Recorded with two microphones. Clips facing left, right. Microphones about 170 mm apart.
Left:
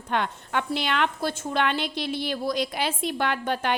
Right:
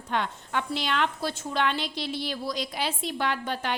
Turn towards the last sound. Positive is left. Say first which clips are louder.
# left 3 dB
turn(degrees=55)  # may be behind; listen again after turning